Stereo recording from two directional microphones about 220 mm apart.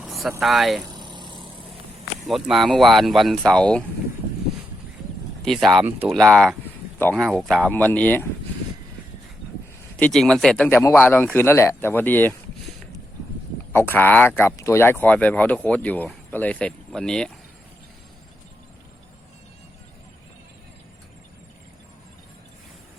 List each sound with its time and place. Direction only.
0.0 s speech: centre (ahead or behind)
0.9 s vehicle: 20° right (ahead or behind)
2.2 s speech: centre (ahead or behind)
5.5 s speech: centre (ahead or behind)
10.0 s speech: 5° left (ahead or behind)
13.7 s speech: 10° left (ahead or behind)